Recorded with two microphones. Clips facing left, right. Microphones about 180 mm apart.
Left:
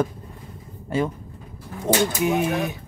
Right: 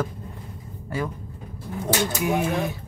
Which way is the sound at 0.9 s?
25° left (ahead or behind).